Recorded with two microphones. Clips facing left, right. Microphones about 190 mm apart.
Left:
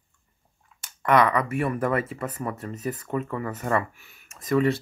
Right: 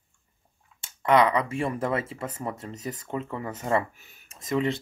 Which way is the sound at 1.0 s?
25° right (ahead or behind).